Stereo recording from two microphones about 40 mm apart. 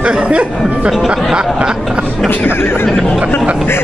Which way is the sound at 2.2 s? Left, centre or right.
Left.